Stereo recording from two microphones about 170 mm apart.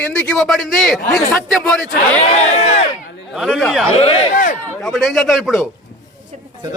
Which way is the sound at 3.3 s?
5° right (ahead or behind).